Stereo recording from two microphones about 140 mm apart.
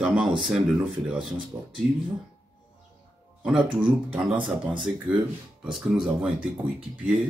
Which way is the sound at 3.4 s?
10° right (ahead or behind).